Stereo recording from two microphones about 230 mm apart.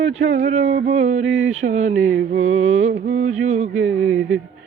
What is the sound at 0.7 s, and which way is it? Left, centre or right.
Music, right.